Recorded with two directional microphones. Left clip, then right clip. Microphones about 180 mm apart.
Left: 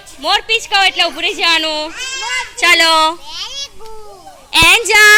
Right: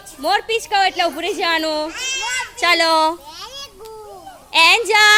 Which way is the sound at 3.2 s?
60° right (ahead or behind).